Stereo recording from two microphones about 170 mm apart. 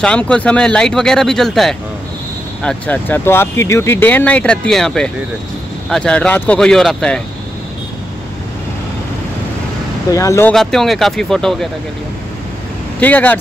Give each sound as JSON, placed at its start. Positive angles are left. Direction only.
{"t": 0.0, "sound": "speech", "side_deg": 5}
{"t": 10.1, "sound": "speech", "side_deg": 20}
{"t": 10.5, "sound": "speech", "side_deg": 0}
{"t": 13.0, "sound": "speech", "side_deg": 10}